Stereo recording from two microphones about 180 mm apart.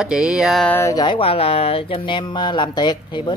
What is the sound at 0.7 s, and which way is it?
Speech, 20° left (ahead or behind).